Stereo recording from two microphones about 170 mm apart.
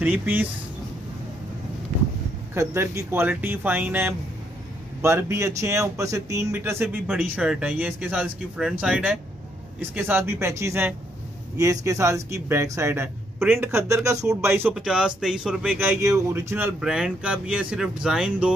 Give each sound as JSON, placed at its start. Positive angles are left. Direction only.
{"t": 0.0, "sound": "speech", "side_deg": -10}
{"t": 2.5, "sound": "speech", "side_deg": -15}
{"t": 14.7, "sound": "speech", "side_deg": -5}